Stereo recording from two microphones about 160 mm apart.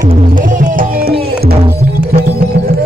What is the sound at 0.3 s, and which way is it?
Music, 55° right (ahead or behind).